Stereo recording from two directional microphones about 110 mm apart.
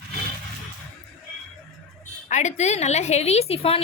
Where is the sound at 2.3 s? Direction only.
90° left; by 3.8 s 65° left (ahead or behind).